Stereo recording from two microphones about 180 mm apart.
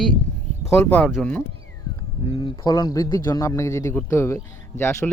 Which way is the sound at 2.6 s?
20° left (ahead or behind).